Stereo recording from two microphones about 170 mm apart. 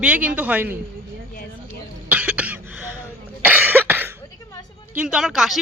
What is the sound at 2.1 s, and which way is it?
Cough, 10° right (ahead or behind).